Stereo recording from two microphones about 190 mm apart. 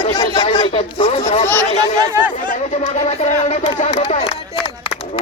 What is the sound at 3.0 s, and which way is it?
Speech, 30° left (ahead or behind).